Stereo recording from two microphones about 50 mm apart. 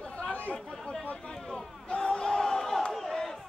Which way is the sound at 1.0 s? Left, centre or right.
Centre.